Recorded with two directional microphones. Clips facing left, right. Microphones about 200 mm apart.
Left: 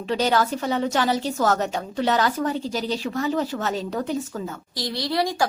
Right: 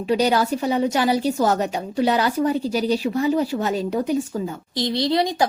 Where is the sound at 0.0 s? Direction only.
15° right (ahead or behind).